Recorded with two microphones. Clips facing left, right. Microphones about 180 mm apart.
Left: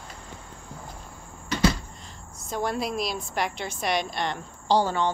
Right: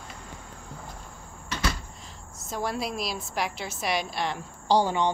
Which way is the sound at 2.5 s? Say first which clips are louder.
Left 2 dB; centre (ahead or behind).